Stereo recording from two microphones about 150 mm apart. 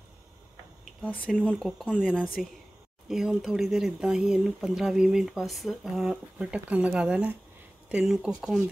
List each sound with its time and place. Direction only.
1.0 s speech: 10° left (ahead or behind)